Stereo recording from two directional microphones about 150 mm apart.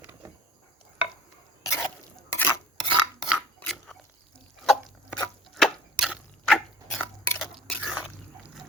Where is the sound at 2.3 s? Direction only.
15° left (ahead or behind).